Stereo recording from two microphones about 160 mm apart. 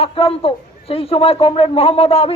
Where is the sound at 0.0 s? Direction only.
35° left (ahead or behind).